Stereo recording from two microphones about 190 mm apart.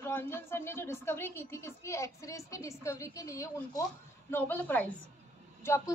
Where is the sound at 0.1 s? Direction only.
10° left (ahead or behind).